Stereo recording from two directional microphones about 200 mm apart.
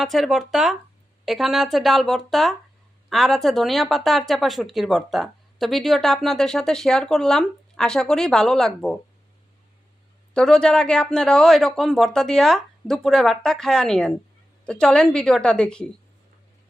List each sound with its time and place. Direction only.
0.0 s speech: centre (ahead or behind)
10.3 s speech: 5° left (ahead or behind)